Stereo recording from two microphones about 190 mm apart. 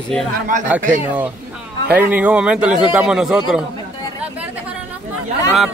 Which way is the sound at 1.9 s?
5° right (ahead or behind).